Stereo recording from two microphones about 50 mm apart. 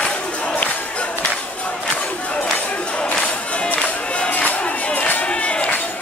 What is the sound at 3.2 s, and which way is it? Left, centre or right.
Music, left.